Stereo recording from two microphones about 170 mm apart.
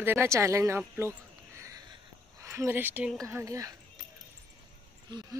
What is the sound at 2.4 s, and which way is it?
Speech, 15° right (ahead or behind).